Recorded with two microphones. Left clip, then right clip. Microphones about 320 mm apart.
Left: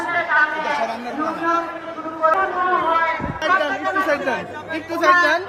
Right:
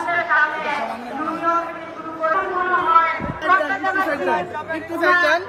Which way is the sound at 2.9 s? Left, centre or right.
Left.